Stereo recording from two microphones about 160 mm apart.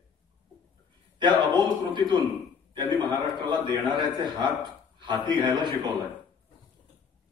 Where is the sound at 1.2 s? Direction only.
25° right (ahead or behind).